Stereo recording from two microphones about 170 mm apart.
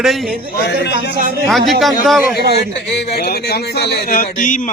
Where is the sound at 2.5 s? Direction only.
75° left (ahead or behind).